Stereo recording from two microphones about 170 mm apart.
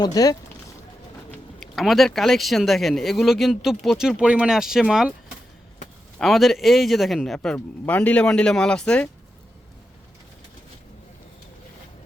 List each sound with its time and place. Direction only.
0.0 s speech: 20° left (ahead or behind)
1.3 s speech: centre (ahead or behind)
6.1 s speech: centre (ahead or behind)